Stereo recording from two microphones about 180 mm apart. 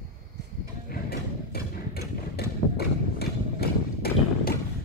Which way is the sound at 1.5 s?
60° left (ahead or behind).